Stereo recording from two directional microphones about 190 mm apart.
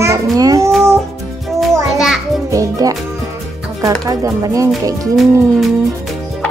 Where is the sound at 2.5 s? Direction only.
20° right (ahead or behind).